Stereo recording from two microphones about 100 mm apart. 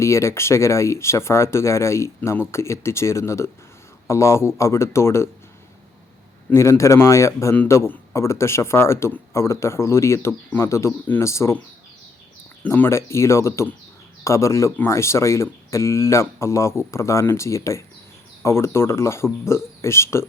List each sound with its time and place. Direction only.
0.0 s speech: 30° left (ahead or behind)
6.5 s speech: 30° left (ahead or behind)
12.6 s speech: 20° left (ahead or behind)